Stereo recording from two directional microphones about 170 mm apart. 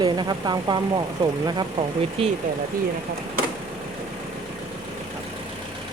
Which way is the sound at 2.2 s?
35° right (ahead or behind).